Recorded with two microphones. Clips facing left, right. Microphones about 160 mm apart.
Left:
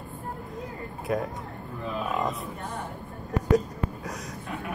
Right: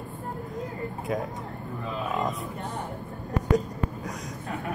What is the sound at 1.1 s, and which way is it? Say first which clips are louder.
Speech: left 2 dB; centre (ahead or behind).